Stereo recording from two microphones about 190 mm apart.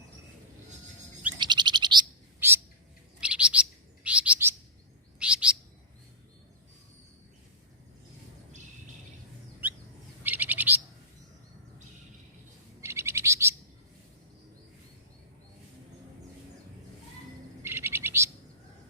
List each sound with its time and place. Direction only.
1.4 s bird: 25° right (ahead or behind)
2.4 s bird: 10° right (ahead or behind)
3.2 s chirp: 5° right (ahead or behind)
10.2 s bird: 10° right (ahead or behind)
12.8 s bird: 15° right (ahead or behind)
17.6 s bird: 10° right (ahead or behind)